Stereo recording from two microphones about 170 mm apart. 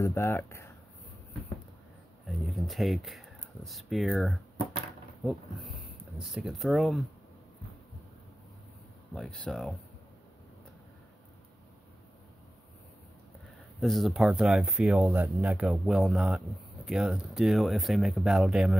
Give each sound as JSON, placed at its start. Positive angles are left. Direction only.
{"t": 0.0, "sound": "speech", "side_deg": 15}
{"t": 2.2, "sound": "speech", "side_deg": 0}
{"t": 9.1, "sound": "speech", "side_deg": 5}
{"t": 13.7, "sound": "speech", "side_deg": 0}